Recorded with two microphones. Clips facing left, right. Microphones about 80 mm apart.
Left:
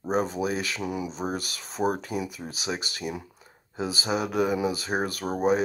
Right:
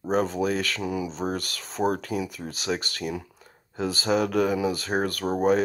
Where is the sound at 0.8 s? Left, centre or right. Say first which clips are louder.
Right 2 dB; left.